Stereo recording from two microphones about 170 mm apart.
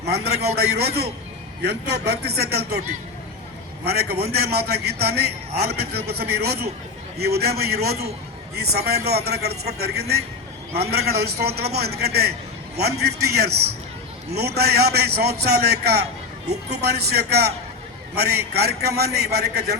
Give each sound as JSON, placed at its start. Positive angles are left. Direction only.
{"t": 0.5, "sound": "a man's voice", "side_deg": -70}
{"t": 3.8, "sound": "a man's voice", "side_deg": -70}